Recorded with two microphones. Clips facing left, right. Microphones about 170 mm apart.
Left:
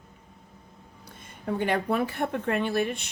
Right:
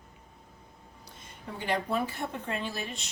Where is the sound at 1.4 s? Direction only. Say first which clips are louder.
Left 6 dB; 60° left (ahead or behind).